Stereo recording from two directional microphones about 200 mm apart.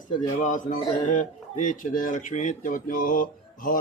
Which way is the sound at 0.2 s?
40° left (ahead or behind).